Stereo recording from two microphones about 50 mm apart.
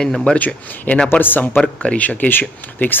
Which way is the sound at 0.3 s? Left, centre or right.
Left.